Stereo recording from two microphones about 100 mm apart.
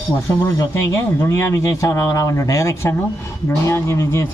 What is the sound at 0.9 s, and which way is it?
Speech, 30° left (ahead or behind).